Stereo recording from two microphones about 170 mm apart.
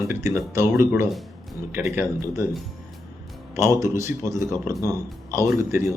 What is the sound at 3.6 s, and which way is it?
Speech, 15° right (ahead or behind).